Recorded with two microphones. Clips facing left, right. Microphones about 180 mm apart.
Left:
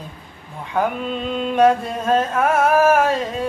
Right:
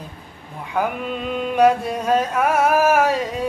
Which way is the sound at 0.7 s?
10° right (ahead or behind).